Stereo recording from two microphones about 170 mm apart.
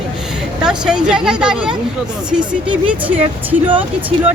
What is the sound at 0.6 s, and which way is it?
Speech, 5° right (ahead or behind).